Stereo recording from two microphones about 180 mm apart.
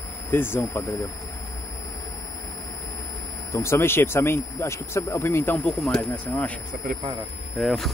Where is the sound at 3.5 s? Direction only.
15° left (ahead or behind).